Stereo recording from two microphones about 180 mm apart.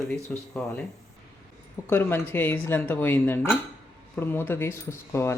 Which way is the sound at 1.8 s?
10° left (ahead or behind).